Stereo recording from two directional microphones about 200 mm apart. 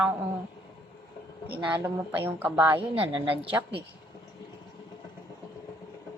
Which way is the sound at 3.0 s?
25° right (ahead or behind).